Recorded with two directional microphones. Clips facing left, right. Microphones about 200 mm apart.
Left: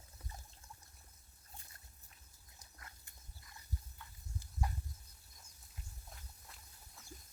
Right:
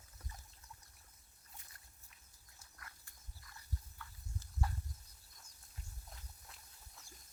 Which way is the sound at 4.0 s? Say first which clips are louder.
Right 1 dB; 20° left (ahead or behind).